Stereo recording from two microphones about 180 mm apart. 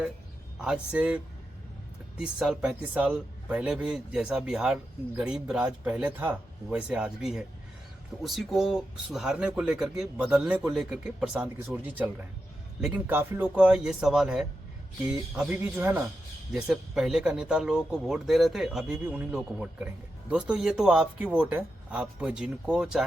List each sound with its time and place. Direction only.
0.6 s a man's voice: 5° right (ahead or behind)